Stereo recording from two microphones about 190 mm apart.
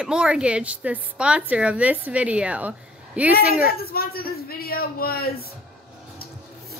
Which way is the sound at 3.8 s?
55° left (ahead or behind).